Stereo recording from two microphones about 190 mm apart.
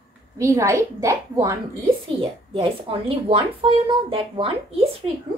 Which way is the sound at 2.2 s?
30° right (ahead or behind).